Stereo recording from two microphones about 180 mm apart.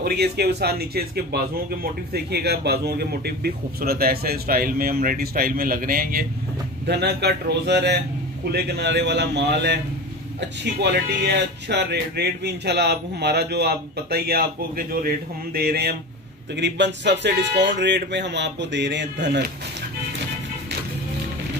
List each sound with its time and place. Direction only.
0.0 s speech: 60° right (ahead or behind)
6.9 s speech: 65° right (ahead or behind)
16.5 s speech: 75° right (ahead or behind)